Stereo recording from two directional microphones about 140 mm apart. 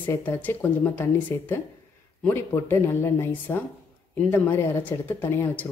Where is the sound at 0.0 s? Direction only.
15° left (ahead or behind).